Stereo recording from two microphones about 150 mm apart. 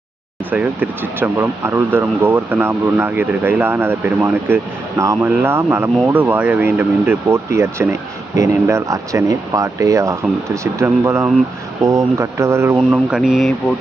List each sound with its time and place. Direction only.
0.5 s speech: 10° right (ahead or behind)
12.9 s speech: 5° right (ahead or behind)